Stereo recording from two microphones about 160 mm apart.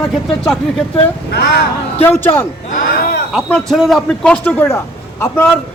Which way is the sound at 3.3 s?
Centre (ahead or behind).